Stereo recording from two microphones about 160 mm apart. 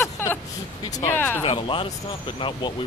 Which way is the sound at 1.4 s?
35° left (ahead or behind).